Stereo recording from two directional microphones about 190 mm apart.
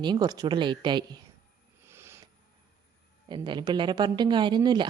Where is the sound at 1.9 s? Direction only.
15° right (ahead or behind).